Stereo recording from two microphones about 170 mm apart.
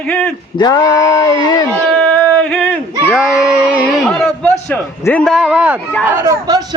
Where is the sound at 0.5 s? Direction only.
25° left (ahead or behind).